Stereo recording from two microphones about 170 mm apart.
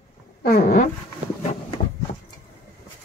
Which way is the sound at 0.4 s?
60° left (ahead or behind).